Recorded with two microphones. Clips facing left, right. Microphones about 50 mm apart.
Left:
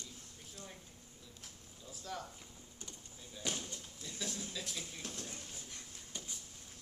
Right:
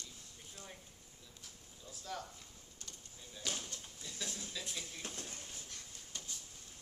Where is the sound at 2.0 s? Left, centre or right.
Centre.